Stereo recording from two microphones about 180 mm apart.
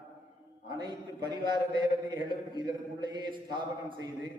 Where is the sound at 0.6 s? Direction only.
25° right (ahead or behind).